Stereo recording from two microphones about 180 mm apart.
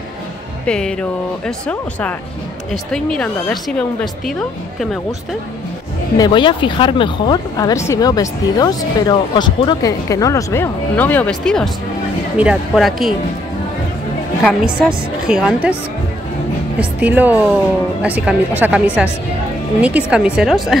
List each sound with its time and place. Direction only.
0.7 s a woman's voice: 5° left (ahead or behind)
6.1 s a woman's voice: 25° left (ahead or behind); by 13.1 s centre (ahead or behind)
14.4 s a woman's voice: 5° right (ahead or behind)
16.7 s a woman's voice: 10° right (ahead or behind)